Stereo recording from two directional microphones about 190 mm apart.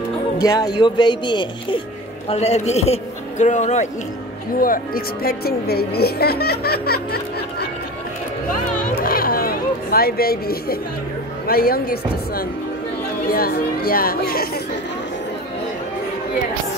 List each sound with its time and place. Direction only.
0.4 s a man's voice: 20° left (ahead or behind); by 3.9 s 40° left (ahead or behind)
4.6 s a woman's voice: 50° left (ahead or behind)
8.9 s a sound: 50° left (ahead or behind)
11.4 s speech: 55° left (ahead or behind)